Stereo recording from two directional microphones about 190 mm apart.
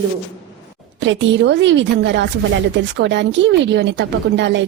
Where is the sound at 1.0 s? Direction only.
75° right (ahead or behind).